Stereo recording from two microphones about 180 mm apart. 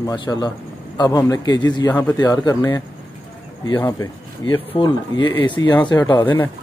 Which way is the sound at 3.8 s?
25° left (ahead or behind).